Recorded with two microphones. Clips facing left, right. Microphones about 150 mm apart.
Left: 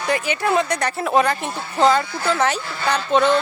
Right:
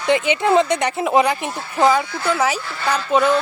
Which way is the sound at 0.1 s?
20° right (ahead or behind).